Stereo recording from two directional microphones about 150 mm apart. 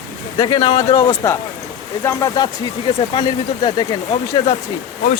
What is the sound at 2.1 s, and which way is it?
Speech, 20° left (ahead or behind).